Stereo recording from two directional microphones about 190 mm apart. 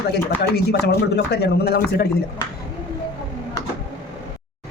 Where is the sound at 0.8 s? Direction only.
55° left (ahead or behind).